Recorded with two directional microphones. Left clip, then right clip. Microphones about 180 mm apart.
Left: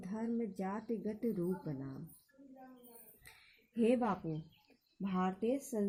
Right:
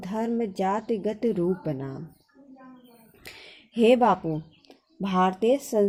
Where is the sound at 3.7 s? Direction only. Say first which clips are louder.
Right 15 dB; 35° right (ahead or behind).